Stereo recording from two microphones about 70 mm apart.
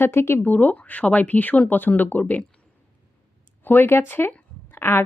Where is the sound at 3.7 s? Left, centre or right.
Left.